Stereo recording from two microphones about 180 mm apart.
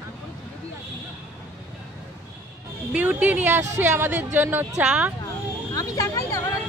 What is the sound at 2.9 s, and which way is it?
A woman's voice, 10° right (ahead or behind).